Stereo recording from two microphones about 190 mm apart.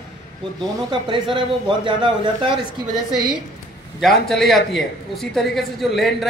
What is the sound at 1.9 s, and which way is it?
Speech, 25° right (ahead or behind).